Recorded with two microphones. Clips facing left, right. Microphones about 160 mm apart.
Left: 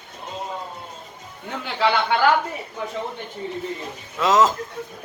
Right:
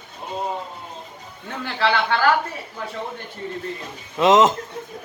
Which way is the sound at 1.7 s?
15° left (ahead or behind).